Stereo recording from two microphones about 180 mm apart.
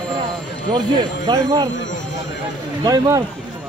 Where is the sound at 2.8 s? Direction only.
20° right (ahead or behind).